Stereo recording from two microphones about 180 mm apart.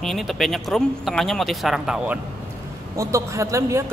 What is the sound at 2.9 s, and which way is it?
Speech, 15° right (ahead or behind).